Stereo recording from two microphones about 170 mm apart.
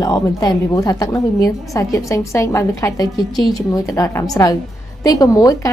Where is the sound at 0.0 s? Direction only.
20° left (ahead or behind).